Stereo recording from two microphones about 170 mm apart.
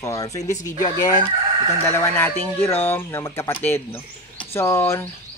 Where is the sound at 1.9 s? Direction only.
15° left (ahead or behind).